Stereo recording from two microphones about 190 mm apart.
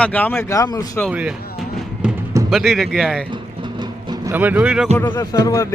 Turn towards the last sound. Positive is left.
turn(degrees=20)  # may be behind; listen again after turning